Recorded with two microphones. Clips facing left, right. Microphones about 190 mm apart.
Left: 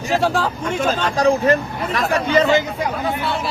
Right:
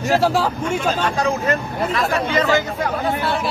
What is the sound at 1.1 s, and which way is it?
Speech, 35° left (ahead or behind).